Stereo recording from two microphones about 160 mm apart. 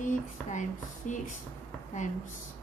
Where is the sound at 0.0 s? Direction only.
50° left (ahead or behind).